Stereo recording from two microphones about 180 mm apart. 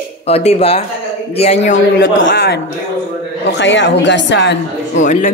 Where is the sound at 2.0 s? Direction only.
60° left (ahead or behind).